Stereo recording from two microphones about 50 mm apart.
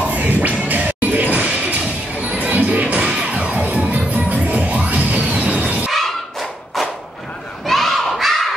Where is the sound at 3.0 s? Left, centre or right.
Centre.